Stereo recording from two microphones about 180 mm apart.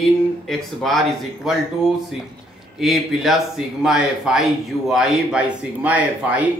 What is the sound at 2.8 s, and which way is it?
A man's voice, centre (ahead or behind).